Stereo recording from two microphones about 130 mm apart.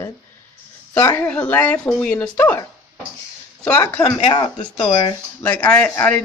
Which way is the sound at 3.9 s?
10° left (ahead or behind).